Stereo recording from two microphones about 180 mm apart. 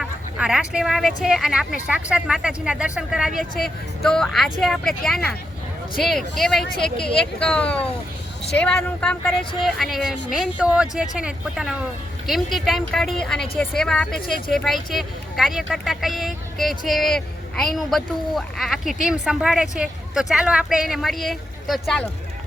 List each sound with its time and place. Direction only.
0.0 s speech: 5° right (ahead or behind)
9.3 s speech: 30° left (ahead or behind)
9.6 s speech: centre (ahead or behind)